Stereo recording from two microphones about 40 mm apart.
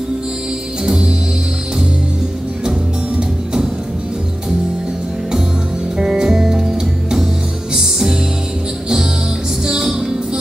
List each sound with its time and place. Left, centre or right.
0.8 s music: centre
5.9 s music: centre
7.7 s music: centre
9.7 s music: centre